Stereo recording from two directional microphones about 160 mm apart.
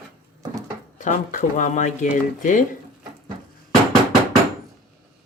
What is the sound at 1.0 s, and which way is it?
Speech, 50° left (ahead or behind).